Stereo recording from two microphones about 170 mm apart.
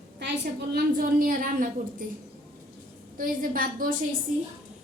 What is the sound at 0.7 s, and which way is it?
A woman's voice, 55° right (ahead or behind).